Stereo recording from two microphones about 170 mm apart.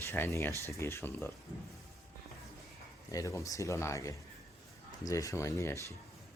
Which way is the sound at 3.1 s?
20° left (ahead or behind).